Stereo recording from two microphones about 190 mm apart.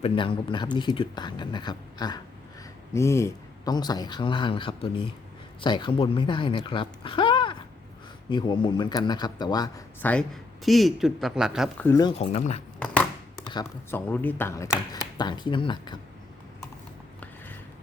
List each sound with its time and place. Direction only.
0.0 s speech: 25° left (ahead or behind)
10.0 s speech: 10° left (ahead or behind)
11.8 s speech: 15° left (ahead or behind)
12.2 s speech: 35° left (ahead or behind)
13.9 s speech: 10° left (ahead or behind)